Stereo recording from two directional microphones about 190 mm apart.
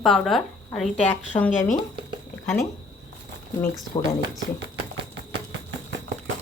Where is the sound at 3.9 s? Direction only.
20° left (ahead or behind).